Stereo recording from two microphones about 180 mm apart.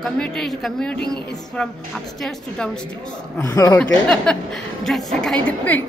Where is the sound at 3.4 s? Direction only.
20° left (ahead or behind).